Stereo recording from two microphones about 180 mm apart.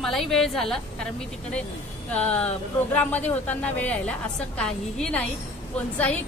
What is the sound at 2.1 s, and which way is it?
A woman's voice, 10° left (ahead or behind).